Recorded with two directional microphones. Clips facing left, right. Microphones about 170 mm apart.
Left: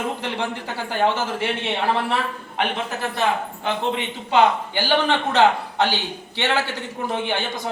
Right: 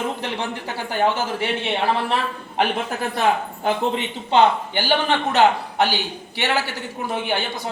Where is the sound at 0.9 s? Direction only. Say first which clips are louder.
Even; 15° right (ahead or behind).